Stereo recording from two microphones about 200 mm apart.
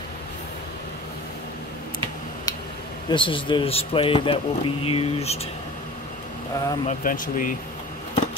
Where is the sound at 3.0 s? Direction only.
25° left (ahead or behind).